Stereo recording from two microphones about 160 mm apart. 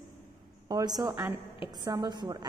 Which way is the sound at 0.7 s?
25° right (ahead or behind).